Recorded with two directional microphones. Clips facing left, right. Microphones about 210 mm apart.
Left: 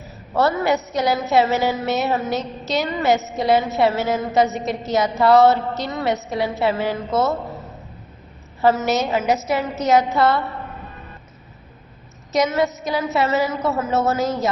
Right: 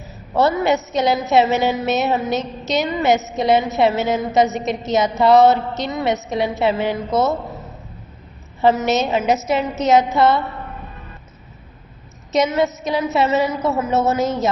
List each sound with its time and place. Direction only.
0.3 s a woman's voice: 20° right (ahead or behind)
8.6 s a woman's voice: 20° right (ahead or behind)
12.3 s a woman's voice: 20° right (ahead or behind)